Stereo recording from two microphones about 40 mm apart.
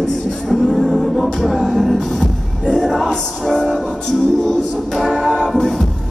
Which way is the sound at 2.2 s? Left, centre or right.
Centre.